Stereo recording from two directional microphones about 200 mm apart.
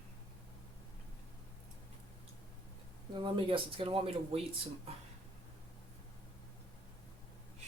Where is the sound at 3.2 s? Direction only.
25° right (ahead or behind).